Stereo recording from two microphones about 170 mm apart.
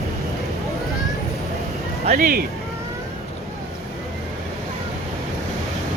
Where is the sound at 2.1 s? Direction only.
60° right (ahead or behind).